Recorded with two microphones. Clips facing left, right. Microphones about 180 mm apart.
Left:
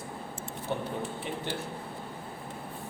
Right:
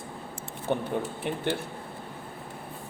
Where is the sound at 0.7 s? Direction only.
60° right (ahead or behind).